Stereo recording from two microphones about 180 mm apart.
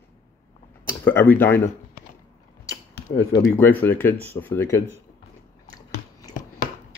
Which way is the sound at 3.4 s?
10° left (ahead or behind).